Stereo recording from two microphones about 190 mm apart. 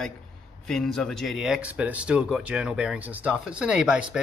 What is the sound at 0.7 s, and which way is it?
Speech, 5° left (ahead or behind).